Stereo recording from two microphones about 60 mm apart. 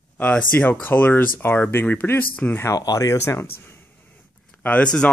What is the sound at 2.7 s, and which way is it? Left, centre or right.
Speech, left.